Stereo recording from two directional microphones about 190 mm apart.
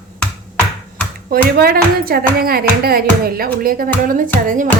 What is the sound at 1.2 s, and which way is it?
Speech, 55° right (ahead or behind).